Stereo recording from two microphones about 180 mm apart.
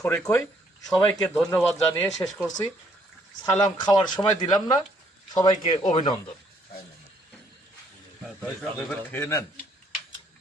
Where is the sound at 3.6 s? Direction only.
25° left (ahead or behind).